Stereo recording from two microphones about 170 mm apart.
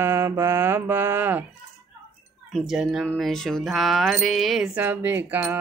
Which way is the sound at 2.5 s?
Centre (ahead or behind).